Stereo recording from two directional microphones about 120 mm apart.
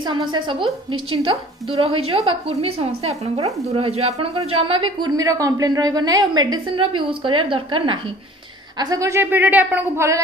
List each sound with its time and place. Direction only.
0.0 s a woman's voice: 40° right (ahead or behind)
8.7 s a woman's voice: 30° right (ahead or behind); by 10.0 s 15° right (ahead or behind)